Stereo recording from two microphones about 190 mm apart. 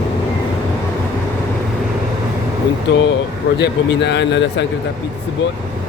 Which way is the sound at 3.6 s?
65° left (ahead or behind).